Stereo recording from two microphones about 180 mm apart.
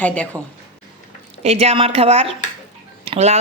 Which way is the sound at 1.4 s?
35° right (ahead or behind).